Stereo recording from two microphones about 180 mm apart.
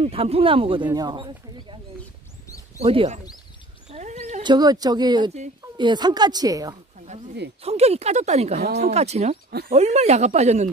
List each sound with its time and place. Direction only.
0.0 s speech: 30° right (ahead or behind)
2.8 s speech: 30° right (ahead or behind)
3.9 s a sound: 40° right (ahead or behind)
4.4 s speech: 25° right (ahead or behind)
7.0 s a sound: 40° right (ahead or behind)
7.6 s speech: 35° right (ahead or behind)